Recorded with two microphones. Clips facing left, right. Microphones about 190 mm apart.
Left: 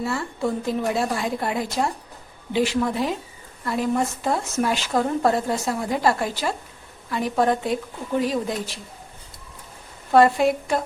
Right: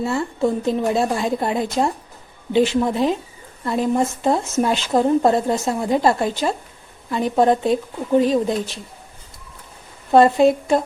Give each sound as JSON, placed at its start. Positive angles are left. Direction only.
{"t": 0.0, "sound": "speech", "side_deg": -25}
{"t": 10.1, "sound": "speech", "side_deg": -25}